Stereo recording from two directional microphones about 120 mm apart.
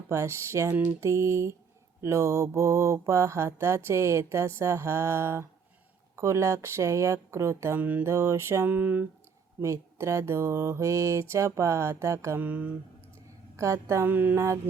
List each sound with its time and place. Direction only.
0.1 s mantra: 25° right (ahead or behind)
8.1 s mantra: 25° right (ahead or behind)
9.6 s mantra: 25° right (ahead or behind)
12.4 s speech: 15° right (ahead or behind)
13.6 s mantra: 25° right (ahead or behind)
14.3 s mantra: 25° right (ahead or behind)